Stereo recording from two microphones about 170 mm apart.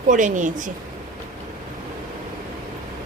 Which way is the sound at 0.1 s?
50° right (ahead or behind).